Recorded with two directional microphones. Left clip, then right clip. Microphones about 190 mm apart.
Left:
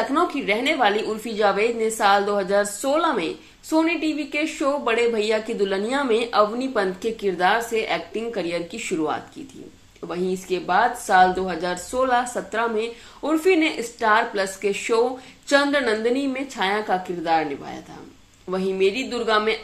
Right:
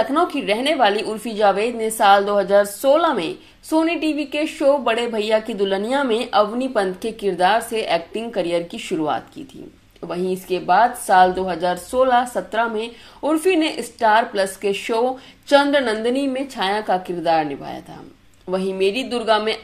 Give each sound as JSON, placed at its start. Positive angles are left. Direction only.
{"t": 0.1, "sound": "a woman's voice", "side_deg": -50}